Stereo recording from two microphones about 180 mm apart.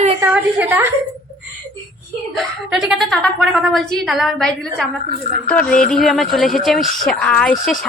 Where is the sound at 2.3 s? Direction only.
Centre (ahead or behind).